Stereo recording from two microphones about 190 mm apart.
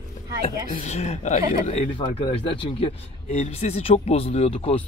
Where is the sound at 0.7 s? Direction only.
35° left (ahead or behind).